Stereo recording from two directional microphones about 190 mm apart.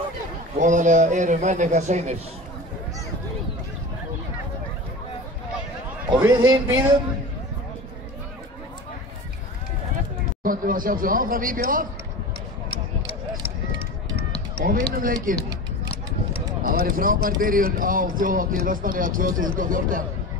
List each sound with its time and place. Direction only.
0.6 s a man's voice: 40° right (ahead or behind)
6.2 s a man's voice: 20° right (ahead or behind)
10.4 s speech: 45° right (ahead or behind)
14.6 s speech: 45° right (ahead or behind)
16.6 s speech: 45° right (ahead or behind)